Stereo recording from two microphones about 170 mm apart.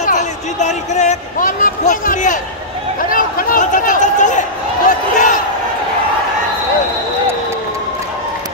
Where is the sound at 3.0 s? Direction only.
55° left (ahead or behind).